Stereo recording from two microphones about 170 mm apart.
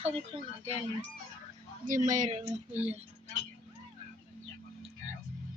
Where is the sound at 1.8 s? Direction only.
50° right (ahead or behind).